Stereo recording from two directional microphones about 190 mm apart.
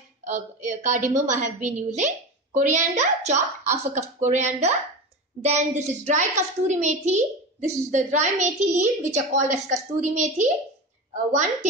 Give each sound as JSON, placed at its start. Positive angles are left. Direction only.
{"t": 0.2, "sound": "a woman's voice", "side_deg": -40}